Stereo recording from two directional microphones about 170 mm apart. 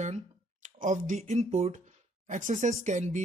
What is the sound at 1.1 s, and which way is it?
Speech, 40° right (ahead or behind).